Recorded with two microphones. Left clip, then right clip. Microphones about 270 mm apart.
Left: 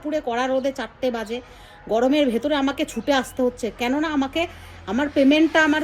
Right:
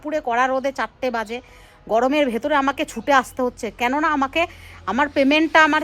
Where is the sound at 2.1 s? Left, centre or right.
Centre.